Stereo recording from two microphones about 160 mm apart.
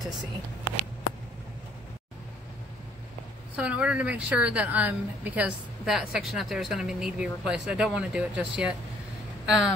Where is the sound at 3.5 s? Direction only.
5° right (ahead or behind).